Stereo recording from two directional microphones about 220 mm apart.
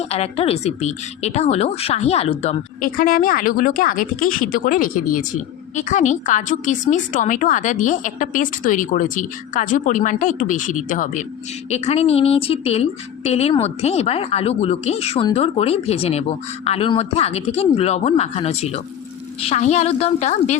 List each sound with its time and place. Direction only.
0.0 s a woman's voice: 30° left (ahead or behind)